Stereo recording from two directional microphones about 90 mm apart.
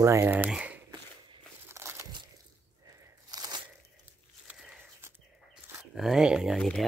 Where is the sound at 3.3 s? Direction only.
50° right (ahead or behind).